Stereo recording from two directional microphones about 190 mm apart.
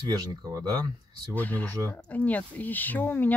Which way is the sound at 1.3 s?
10° left (ahead or behind).